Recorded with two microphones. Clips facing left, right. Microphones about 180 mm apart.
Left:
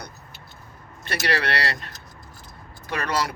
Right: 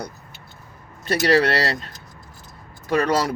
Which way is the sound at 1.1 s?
40° right (ahead or behind).